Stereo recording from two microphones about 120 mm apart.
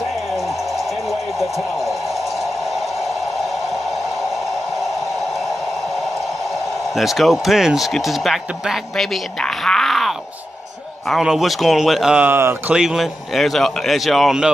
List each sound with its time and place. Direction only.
0.4 s a sound: centre (ahead or behind)
6.5 s speech: centre (ahead or behind)
12.3 s speech: 20° right (ahead or behind)
12.7 s speech: 5° right (ahead or behind)